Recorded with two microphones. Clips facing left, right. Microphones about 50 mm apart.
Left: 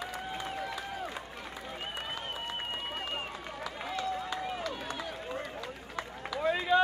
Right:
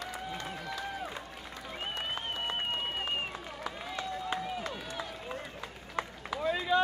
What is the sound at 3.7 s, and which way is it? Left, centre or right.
Run, right.